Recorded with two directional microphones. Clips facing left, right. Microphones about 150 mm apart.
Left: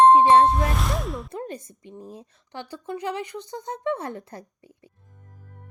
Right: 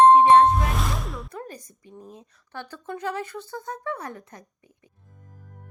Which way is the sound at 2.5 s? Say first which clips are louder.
Left 2 dB; 15° left (ahead or behind).